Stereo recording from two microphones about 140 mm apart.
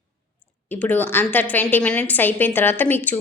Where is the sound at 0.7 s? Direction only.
10° left (ahead or behind).